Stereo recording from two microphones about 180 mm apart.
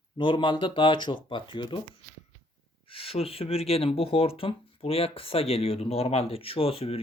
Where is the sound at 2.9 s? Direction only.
30° left (ahead or behind).